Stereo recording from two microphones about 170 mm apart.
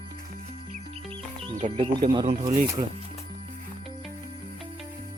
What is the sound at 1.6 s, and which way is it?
Speech, 45° right (ahead or behind).